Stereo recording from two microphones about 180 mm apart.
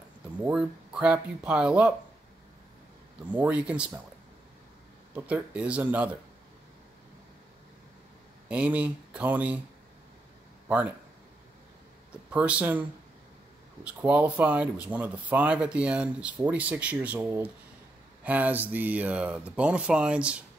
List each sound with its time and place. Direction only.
0.5 s speech: 5° right (ahead or behind)
3.3 s speech: 10° right (ahead or behind)
5.1 s speech: 5° right (ahead or behind)
8.5 s speech: 10° right (ahead or behind)
12.1 s speech: 5° right (ahead or behind)
13.8 s speech: 5° right (ahead or behind)